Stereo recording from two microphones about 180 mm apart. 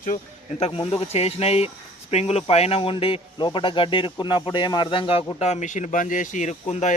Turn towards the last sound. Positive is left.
turn(degrees=40)  # may be behind; listen again after turning